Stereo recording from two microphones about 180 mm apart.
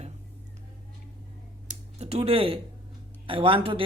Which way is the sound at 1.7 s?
35° right (ahead or behind).